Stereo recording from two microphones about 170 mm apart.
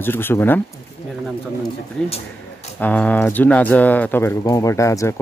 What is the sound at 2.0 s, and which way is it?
Speech, 35° left (ahead or behind).